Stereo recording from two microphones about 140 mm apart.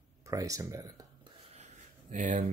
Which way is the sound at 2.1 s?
65° right (ahead or behind).